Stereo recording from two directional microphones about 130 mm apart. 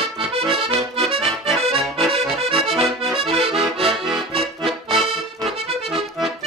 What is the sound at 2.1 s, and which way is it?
Accordion, 50° right (ahead or behind).